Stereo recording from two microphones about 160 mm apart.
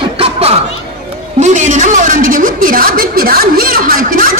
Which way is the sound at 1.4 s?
50° right (ahead or behind).